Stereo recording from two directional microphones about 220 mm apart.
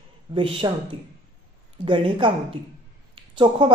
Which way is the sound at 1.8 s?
25° right (ahead or behind).